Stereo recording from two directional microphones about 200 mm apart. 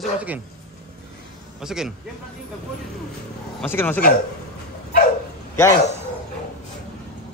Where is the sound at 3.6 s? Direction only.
10° left (ahead or behind).